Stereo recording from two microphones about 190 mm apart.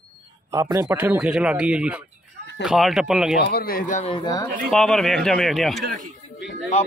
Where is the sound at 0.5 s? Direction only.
20° right (ahead or behind).